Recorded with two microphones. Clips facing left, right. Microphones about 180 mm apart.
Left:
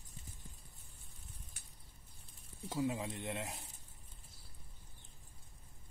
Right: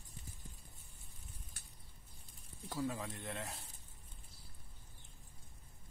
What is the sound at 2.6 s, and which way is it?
Speech, 15° left (ahead or behind).